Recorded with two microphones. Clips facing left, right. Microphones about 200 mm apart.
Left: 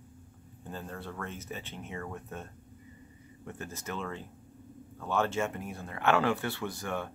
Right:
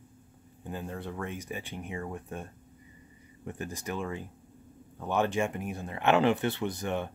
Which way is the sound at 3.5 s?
15° right (ahead or behind).